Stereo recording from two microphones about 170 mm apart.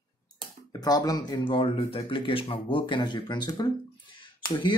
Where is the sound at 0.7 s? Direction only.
25° left (ahead or behind).